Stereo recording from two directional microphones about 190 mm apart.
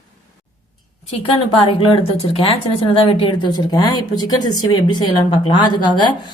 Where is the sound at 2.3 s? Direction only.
30° left (ahead or behind).